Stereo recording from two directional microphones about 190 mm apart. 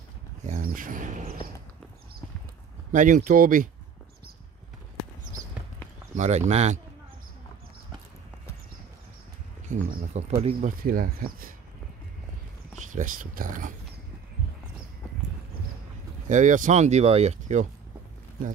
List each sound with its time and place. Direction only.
0.6 s speech: 45° right (ahead or behind)
2.9 s speech: 45° right (ahead or behind)
6.1 s speech: 35° right (ahead or behind)
9.7 s speech: 40° right (ahead or behind)
12.7 s speech: 40° right (ahead or behind)
16.3 s speech: 40° right (ahead or behind)